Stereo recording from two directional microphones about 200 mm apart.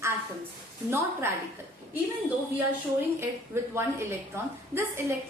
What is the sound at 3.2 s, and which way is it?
A woman's voice, 10° right (ahead or behind).